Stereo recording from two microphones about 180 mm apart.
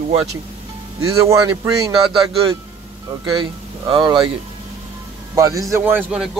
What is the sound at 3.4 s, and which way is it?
Speech, 25° right (ahead or behind).